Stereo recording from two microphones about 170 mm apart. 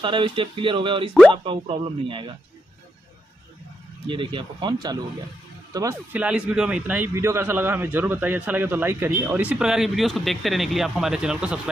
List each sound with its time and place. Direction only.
0.0 s speech: 30° right (ahead or behind)
4.1 s speech: 30° right (ahead or behind)
6.1 s a man's voice: 5° right (ahead or behind)